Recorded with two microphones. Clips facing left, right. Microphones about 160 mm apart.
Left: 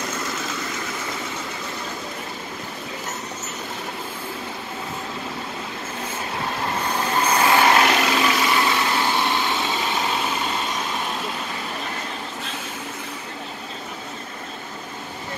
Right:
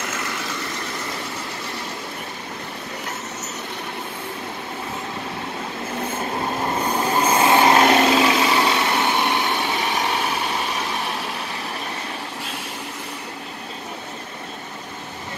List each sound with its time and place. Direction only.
7.2 s vehicle: 25° right (ahead or behind)